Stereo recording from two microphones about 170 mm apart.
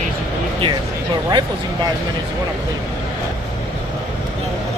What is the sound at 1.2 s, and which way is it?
Speech, 25° right (ahead or behind).